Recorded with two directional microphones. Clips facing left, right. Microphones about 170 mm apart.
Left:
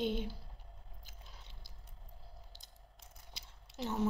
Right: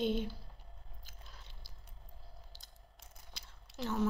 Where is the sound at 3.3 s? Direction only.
25° left (ahead or behind).